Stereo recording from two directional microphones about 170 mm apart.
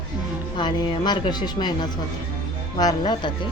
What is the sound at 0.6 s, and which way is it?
Speech, 25° left (ahead or behind).